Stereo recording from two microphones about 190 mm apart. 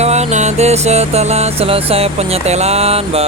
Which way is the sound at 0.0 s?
35° right (ahead or behind).